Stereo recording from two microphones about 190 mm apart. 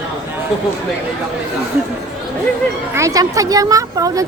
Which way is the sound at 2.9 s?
15° right (ahead or behind).